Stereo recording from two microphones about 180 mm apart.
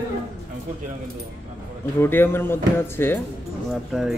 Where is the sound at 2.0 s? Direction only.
10° left (ahead or behind).